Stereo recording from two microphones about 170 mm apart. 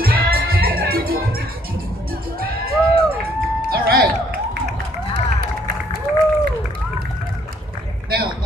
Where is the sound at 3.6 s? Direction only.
60° right (ahead or behind).